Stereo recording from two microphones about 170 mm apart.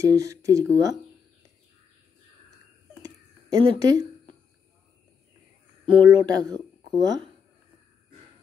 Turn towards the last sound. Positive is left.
turn(degrees=-20)  # may be behind; listen again after turning